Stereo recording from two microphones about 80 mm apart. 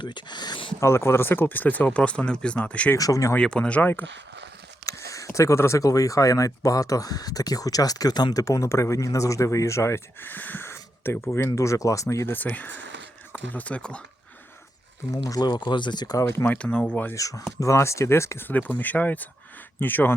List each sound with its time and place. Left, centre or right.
0.0 s speech: left
0.8 s speech: left; by 2.9 s centre
3.0 s speech: left
3.3 s speech: centre
4.9 s speech: left; by 14.0 s centre
15.1 s speech: left
16.2 s speech: left
16.6 s speech: centre
17.2 s speech: left
18.4 s speech: left